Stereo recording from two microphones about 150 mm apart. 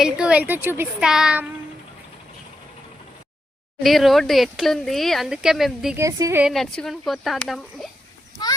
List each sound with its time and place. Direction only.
0.0 s a woman's voice: 5° right (ahead or behind)
0.9 s speech: 5° right (ahead or behind)
3.8 s speech: centre (ahead or behind)
6.0 s a woman's voice: 20° right (ahead or behind)
6.4 s speech: centre (ahead or behind)